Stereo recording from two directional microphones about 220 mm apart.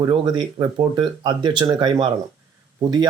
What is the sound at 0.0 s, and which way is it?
Speech, 20° right (ahead or behind).